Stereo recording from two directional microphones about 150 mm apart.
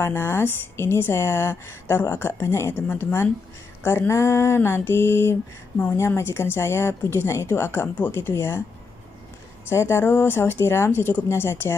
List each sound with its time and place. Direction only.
0.0 s speech: 15° left (ahead or behind)
9.7 s speech: 15° left (ahead or behind)